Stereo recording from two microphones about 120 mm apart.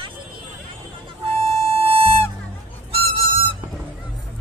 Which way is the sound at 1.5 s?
55° right (ahead or behind).